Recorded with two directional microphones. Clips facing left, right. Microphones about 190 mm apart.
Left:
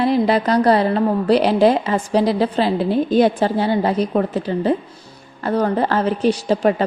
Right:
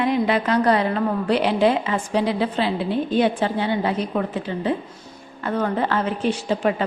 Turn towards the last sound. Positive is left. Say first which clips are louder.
# left 5 dB
turn(degrees=40)  # may be behind; listen again after turning